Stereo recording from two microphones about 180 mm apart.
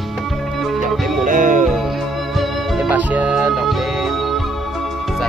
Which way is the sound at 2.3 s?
Centre (ahead or behind).